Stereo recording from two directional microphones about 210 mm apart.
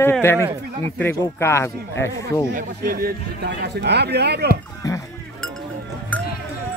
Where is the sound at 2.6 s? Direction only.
45° right (ahead or behind).